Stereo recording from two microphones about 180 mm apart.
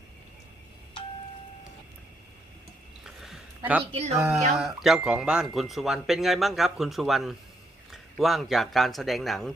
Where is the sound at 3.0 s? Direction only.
Centre (ahead or behind).